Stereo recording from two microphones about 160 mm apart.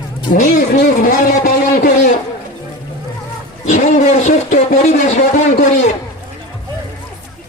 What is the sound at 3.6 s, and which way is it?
Speech, 50° left (ahead or behind).